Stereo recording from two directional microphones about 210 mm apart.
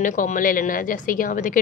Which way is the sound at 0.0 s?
40° left (ahead or behind).